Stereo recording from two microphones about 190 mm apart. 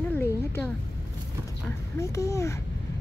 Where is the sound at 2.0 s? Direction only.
15° left (ahead or behind).